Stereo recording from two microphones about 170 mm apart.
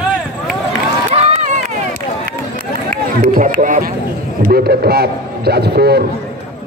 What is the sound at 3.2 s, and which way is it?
Speech, 50° right (ahead or behind).